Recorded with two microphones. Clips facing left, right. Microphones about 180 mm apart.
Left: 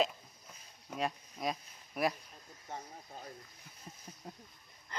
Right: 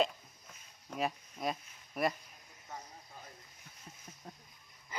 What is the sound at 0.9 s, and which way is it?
Speech, centre (ahead or behind).